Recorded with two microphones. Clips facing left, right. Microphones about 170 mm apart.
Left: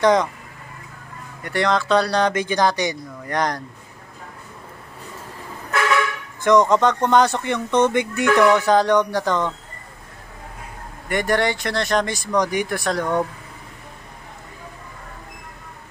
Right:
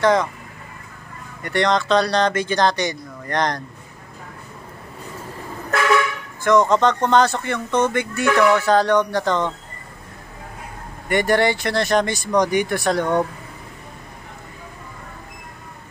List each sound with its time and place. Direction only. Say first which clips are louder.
0.0 s speech: left 1 dB; 20° left (ahead or behind)
1.4 s speech: right 1 dB; 5° left (ahead or behind)
6.4 s speech: even; 15° left (ahead or behind)
11.1 s speech: right 3 dB; centre (ahead or behind)